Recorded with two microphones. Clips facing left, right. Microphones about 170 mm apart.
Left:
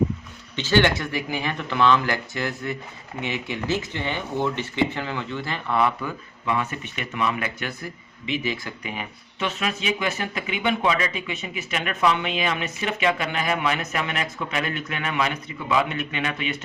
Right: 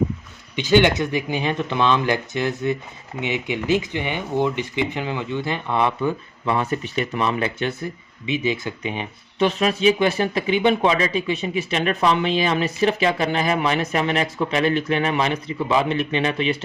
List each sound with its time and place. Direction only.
0.5 s speech: 15° right (ahead or behind)